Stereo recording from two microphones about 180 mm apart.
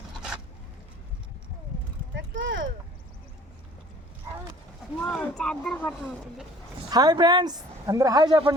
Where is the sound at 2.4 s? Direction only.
90° right.